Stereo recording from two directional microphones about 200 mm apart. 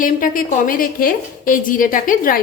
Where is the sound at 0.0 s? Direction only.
45° left (ahead or behind).